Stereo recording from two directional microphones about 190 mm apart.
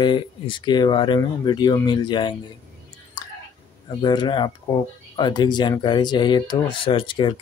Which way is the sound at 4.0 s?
25° left (ahead or behind).